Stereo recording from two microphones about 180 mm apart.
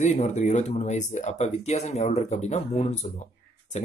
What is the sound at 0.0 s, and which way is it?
Speech, 40° left (ahead or behind).